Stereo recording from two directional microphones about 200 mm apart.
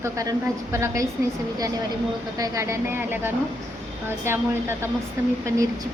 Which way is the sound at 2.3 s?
15° right (ahead or behind).